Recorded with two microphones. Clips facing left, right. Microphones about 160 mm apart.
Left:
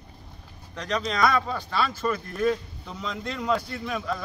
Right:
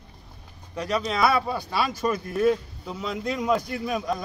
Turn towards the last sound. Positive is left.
turn(degrees=-15)  # may be behind; listen again after turning